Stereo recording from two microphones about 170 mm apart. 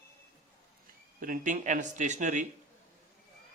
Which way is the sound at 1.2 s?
50° right (ahead or behind).